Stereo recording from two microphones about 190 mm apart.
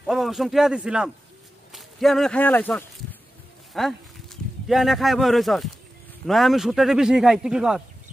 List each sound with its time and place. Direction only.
0.0 s speech: centre (ahead or behind)